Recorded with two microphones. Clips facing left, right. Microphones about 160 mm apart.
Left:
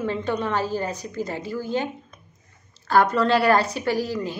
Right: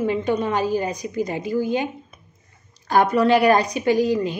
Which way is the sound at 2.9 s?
15° right (ahead or behind).